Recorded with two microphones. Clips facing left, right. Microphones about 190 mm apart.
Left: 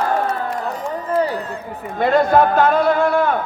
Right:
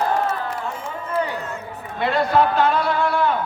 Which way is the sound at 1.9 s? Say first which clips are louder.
Left 4 dB; 45° left (ahead or behind).